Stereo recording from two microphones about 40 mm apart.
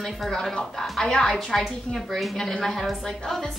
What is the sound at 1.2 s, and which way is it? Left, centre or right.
A woman's voice, centre.